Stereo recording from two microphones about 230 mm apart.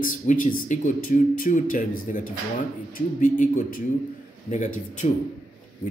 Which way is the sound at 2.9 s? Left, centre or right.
Left.